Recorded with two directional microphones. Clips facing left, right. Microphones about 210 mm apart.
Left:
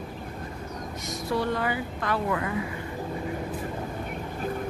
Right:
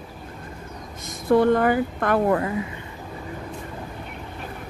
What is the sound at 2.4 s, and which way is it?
Speech, 25° right (ahead or behind).